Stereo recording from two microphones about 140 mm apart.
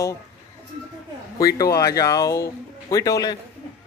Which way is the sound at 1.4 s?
25° left (ahead or behind).